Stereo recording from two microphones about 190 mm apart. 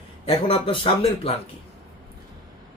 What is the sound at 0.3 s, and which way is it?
Speech, 30° left (ahead or behind).